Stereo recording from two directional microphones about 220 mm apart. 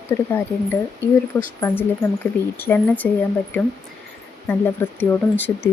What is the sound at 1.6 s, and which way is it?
Speech, 10° left (ahead or behind).